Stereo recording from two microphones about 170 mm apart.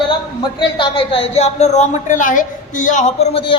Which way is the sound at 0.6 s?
30° left (ahead or behind).